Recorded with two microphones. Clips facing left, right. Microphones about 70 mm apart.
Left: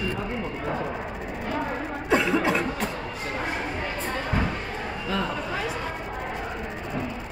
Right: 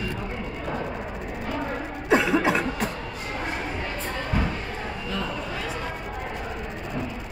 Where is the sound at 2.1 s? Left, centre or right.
Centre.